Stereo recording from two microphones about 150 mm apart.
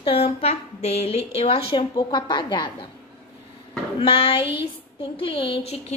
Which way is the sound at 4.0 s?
40° left (ahead or behind).